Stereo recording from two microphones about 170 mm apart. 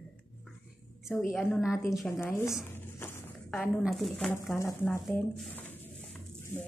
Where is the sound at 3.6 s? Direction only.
Centre (ahead or behind).